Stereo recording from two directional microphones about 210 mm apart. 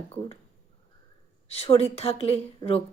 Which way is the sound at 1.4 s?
30° left (ahead or behind).